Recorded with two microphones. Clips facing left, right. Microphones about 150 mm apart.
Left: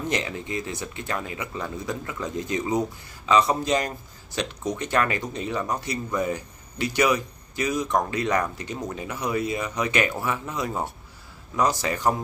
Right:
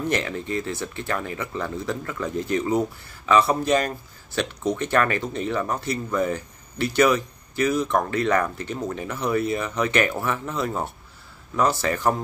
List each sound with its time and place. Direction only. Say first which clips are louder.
0.0 s speech: right 3 dB; 15° left (ahead or behind)